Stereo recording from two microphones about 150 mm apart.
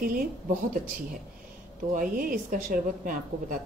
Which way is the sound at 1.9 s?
70° right (ahead or behind).